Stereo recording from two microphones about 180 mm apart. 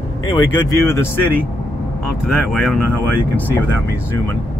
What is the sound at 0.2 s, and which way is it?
Speech, 25° left (ahead or behind).